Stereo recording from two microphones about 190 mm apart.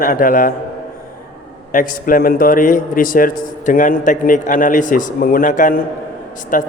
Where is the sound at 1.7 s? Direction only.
45° left (ahead or behind).